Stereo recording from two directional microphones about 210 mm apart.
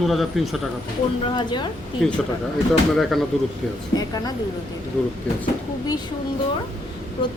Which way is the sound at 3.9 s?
20° left (ahead or behind).